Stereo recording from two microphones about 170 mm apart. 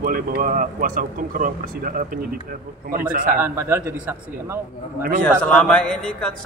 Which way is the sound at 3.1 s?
55° right (ahead or behind).